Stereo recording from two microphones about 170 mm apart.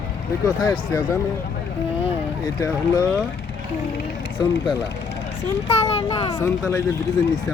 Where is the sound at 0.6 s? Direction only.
20° left (ahead or behind).